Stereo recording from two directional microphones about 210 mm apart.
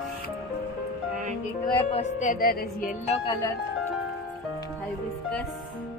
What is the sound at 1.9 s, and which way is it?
Music, 35° left (ahead or behind).